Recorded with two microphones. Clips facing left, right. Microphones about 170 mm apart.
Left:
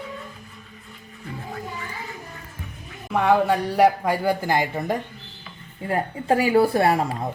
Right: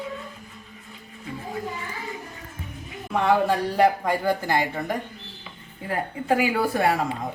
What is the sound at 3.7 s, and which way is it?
Speech, 15° left (ahead or behind).